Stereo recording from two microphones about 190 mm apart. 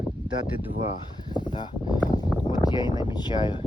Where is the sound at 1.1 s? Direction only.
25° left (ahead or behind).